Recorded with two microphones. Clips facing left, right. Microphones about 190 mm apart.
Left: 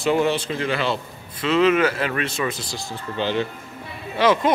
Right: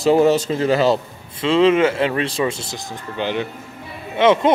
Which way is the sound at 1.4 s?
25° right (ahead or behind).